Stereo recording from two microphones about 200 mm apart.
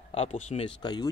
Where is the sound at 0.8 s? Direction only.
20° left (ahead or behind).